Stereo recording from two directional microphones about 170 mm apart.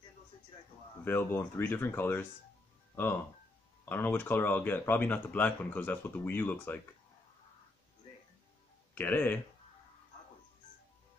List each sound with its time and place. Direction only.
1.0 s speech: 10° left (ahead or behind)
8.9 s speech: 10° left (ahead or behind)